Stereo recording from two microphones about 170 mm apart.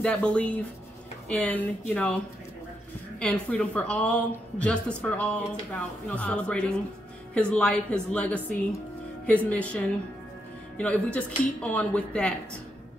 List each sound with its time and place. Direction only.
0.0 s a woman's voice: 5° left (ahead or behind)
3.2 s a woman's voice: 5° left (ahead or behind)
11.1 s a woman's voice: 10° left (ahead or behind)